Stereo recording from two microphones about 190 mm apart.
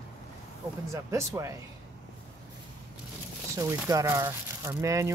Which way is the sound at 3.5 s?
15° right (ahead or behind).